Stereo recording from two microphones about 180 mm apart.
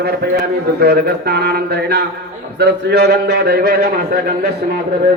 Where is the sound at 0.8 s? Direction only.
60° right (ahead or behind).